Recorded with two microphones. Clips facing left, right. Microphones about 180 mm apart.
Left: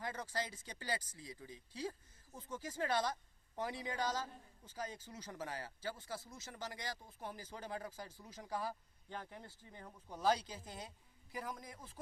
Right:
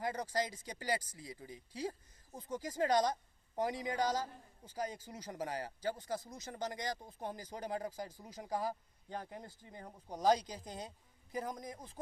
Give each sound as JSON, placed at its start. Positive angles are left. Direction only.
{"t": 0.4, "sound": "a man's voice", "side_deg": -15}
{"t": 2.8, "sound": "speech", "side_deg": -40}
{"t": 3.6, "sound": "a man's voice", "side_deg": -15}
{"t": 5.9, "sound": "speech", "side_deg": -40}
{"t": 7.2, "sound": "a man's voice", "side_deg": -20}
{"t": 9.0, "sound": "speech", "side_deg": -35}
{"t": 10.3, "sound": "a man's voice", "side_deg": -15}
{"t": 11.3, "sound": "speech", "side_deg": -40}